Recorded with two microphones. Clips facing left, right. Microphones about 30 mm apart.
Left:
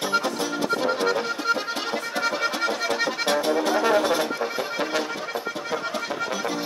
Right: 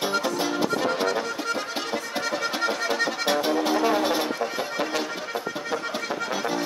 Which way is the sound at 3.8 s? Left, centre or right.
Centre.